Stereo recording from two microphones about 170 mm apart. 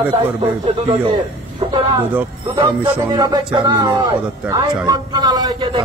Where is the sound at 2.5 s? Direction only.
30° right (ahead or behind).